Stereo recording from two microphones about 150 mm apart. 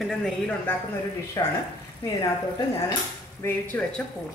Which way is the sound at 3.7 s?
10° left (ahead or behind).